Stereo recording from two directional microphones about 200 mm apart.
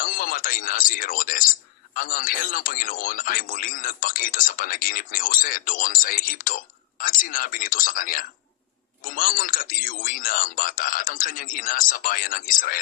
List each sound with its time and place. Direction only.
0.0 s speech: 45° left (ahead or behind)